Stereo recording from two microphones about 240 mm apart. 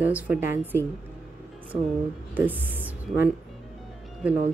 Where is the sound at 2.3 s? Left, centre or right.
Centre.